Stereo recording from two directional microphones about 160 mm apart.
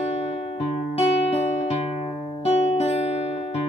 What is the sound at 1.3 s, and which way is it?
Music, 40° left (ahead or behind).